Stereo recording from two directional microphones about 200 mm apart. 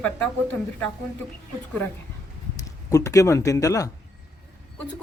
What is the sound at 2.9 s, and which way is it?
A woman's voice, 15° left (ahead or behind).